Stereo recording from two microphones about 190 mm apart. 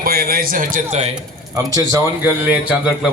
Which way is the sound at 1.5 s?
20° right (ahead or behind).